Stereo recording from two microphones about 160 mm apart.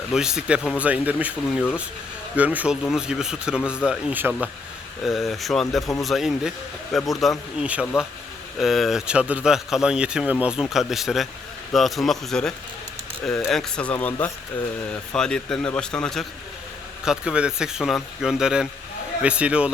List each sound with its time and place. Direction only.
0.1 s a man's voice: 5° right (ahead or behind)